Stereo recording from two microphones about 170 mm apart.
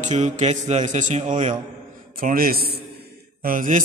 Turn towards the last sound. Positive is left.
turn(degrees=-55)  # may be behind; listen again after turning